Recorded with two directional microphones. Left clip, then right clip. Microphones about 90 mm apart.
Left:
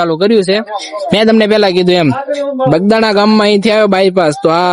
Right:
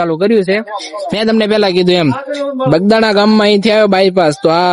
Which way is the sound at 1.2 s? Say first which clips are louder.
Left 3 dB; 35° left (ahead or behind).